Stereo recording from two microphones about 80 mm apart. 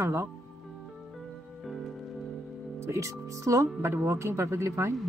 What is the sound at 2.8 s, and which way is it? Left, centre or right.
Speech, right.